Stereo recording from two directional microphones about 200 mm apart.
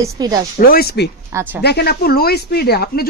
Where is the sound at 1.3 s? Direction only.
10° right (ahead or behind).